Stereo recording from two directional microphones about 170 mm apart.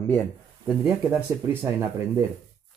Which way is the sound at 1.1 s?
15° right (ahead or behind).